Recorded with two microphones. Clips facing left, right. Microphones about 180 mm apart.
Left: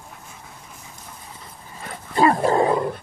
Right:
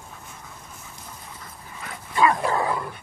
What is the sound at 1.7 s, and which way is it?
Dog, 35° left (ahead or behind).